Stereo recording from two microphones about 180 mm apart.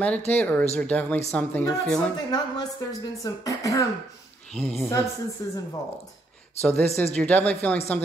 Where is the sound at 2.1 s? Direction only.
20° left (ahead or behind).